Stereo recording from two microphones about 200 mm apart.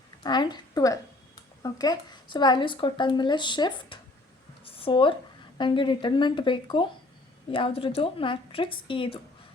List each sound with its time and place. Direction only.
0.2 s a woman's voice: 20° left (ahead or behind)
4.6 s a sound: 25° left (ahead or behind)
5.5 s speech: 25° left (ahead or behind)